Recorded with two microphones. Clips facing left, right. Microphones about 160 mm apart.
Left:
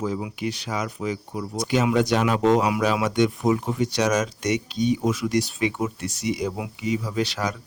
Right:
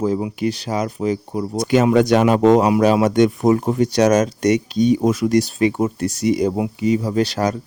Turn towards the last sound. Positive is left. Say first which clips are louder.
# right 7 dB
turn(degrees=-40)  # may be behind; listen again after turning